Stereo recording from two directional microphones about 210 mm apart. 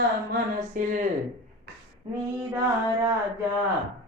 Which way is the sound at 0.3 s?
40° right (ahead or behind).